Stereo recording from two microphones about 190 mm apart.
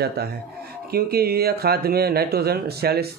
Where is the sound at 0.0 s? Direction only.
55° right (ahead or behind).